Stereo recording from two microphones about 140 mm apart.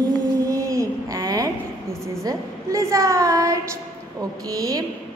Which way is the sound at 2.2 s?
20° right (ahead or behind).